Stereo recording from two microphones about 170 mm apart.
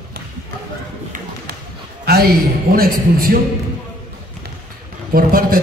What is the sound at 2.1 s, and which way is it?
A man's voice, 70° right (ahead or behind).